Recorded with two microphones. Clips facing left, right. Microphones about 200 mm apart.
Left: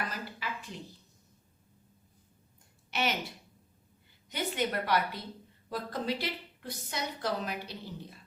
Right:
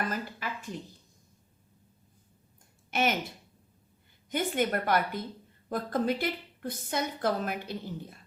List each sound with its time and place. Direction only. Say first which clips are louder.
0.1 s a sound: right 4 dB; 50° right (ahead or behind)
2.9 s speech: right 4 dB; 50° right (ahead or behind)
4.3 s a woman's voice: right 4 dB; 50° right (ahead or behind)